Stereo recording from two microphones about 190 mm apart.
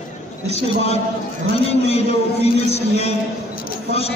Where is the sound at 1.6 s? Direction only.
30° left (ahead or behind).